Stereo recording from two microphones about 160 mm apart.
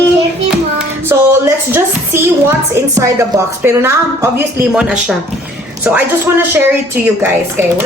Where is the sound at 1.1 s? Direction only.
15° right (ahead or behind).